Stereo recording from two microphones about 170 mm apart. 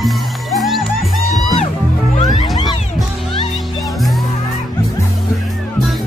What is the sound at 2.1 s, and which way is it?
Music, 40° left (ahead or behind).